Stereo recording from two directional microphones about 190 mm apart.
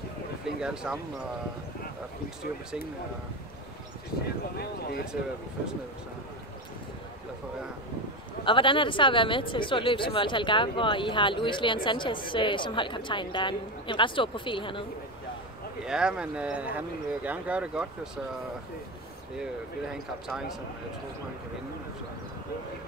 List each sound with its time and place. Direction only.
0.6 s speech: 5° right (ahead or behind)
4.6 s speech: 55° left (ahead or behind)
8.5 s speech: 25° left (ahead or behind)
15.8 s speech: 5° right (ahead or behind)
19.9 s speech: 5° right (ahead or behind)